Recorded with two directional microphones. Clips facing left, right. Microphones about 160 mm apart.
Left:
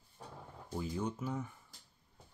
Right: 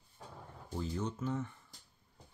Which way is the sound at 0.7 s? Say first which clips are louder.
Even; 10° left (ahead or behind).